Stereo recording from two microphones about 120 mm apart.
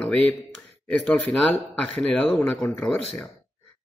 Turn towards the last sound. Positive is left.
turn(degrees=5)  # may be behind; listen again after turning